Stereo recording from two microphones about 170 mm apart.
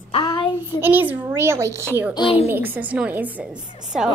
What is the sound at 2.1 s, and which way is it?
Speech, 30° left (ahead or behind).